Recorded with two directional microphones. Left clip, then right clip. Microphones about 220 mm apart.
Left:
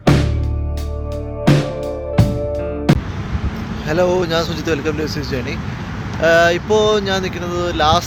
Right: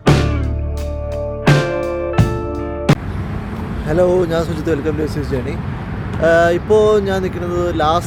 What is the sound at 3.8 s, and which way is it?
Speech, 10° right (ahead or behind).